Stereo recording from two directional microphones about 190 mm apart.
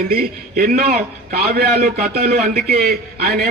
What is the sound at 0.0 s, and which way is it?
A man's voice, 50° right (ahead or behind).